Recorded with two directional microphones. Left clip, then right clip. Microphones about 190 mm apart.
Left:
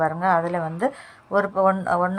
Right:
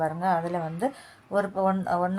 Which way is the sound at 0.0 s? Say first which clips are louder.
Left 5 dB; 10° left (ahead or behind).